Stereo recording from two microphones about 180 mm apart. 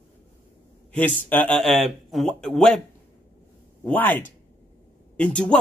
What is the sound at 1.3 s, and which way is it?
Speech, 5° left (ahead or behind).